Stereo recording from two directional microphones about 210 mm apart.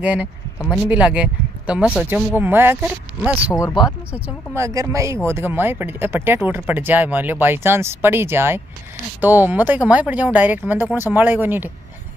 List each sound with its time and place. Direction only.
0.0 s speech: 5° right (ahead or behind)
3.5 s speech: 20° left (ahead or behind)
4.1 s speech: 15° right (ahead or behind)